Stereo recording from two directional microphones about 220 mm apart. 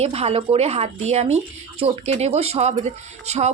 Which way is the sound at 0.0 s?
30° right (ahead or behind).